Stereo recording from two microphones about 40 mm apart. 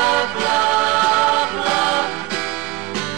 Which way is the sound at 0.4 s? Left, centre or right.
Right.